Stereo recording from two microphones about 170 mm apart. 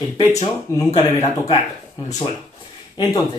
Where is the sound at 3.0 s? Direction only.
25° left (ahead or behind).